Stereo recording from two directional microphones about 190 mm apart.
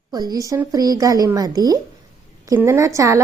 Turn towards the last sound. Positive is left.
turn(degrees=-15)  # may be behind; listen again after turning